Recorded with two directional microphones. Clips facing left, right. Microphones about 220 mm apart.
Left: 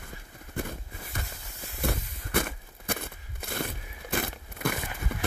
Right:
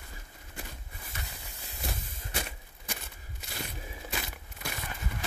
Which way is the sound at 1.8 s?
55° left (ahead or behind).